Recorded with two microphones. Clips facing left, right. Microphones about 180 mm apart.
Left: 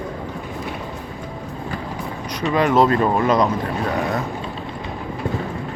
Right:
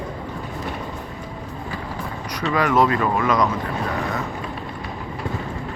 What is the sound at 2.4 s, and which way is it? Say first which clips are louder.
Speech: left 2 dB; 20° left (ahead or behind).